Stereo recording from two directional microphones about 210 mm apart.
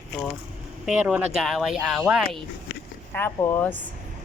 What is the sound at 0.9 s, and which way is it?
Speech, 5° right (ahead or behind).